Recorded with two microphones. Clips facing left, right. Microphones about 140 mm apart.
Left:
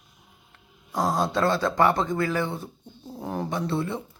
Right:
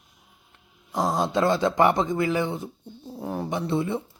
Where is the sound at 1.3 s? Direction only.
15° right (ahead or behind).